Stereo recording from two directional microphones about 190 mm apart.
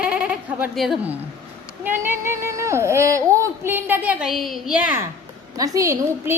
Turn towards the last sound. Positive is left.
turn(degrees=-15)  # may be behind; listen again after turning